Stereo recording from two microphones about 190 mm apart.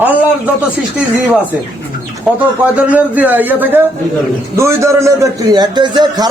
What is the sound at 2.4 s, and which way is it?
A man's voice, 10° right (ahead or behind).